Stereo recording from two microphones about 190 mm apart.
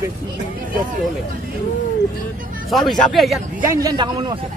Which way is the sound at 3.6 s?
15° right (ahead or behind).